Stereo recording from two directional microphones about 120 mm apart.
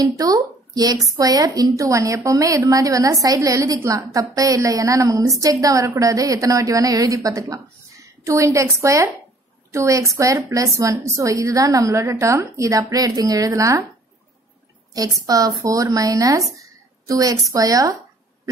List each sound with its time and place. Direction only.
0.0 s a woman's voice: 30° right (ahead or behind)
15.2 s a woman's voice: 30° right (ahead or behind)